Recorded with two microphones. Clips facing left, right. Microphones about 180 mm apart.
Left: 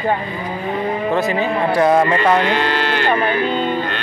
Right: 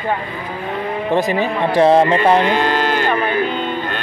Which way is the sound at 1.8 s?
25° right (ahead or behind).